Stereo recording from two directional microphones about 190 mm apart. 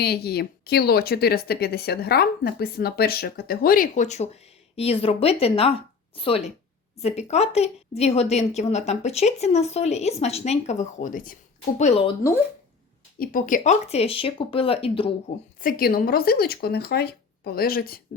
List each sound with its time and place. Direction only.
0.0 s a woman's voice: 55° left (ahead or behind)
11.8 s a woman's voice: 30° left (ahead or behind)
13.1 s speech: 50° left (ahead or behind); by 15.1 s 30° left (ahead or behind)
15.6 s speech: 50° left (ahead or behind)